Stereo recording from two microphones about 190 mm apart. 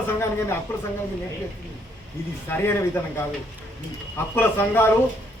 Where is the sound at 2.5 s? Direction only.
10° left (ahead or behind).